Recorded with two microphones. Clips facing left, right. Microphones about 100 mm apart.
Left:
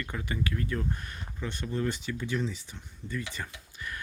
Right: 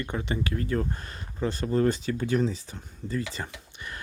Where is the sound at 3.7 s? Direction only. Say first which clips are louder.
Left 2 dB; 25° right (ahead or behind).